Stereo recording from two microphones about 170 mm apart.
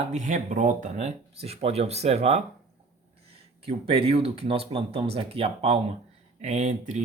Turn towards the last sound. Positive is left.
turn(degrees=-45)  # may be behind; listen again after turning